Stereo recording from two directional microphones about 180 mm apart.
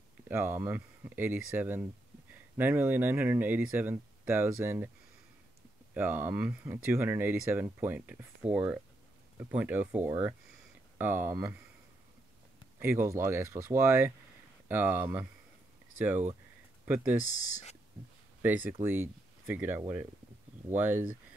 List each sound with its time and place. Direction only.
0.3 s speech: 15° right (ahead or behind)
5.9 s speech: 10° right (ahead or behind)
12.7 s speech: 15° right (ahead or behind)
17.2 s speech: 40° left (ahead or behind)
18.4 s speech: 10° right (ahead or behind)